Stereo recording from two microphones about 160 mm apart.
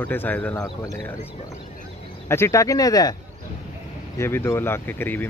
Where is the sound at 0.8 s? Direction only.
20° left (ahead or behind).